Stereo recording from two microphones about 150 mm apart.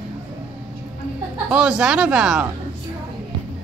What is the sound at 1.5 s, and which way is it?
Speech, 5° right (ahead or behind).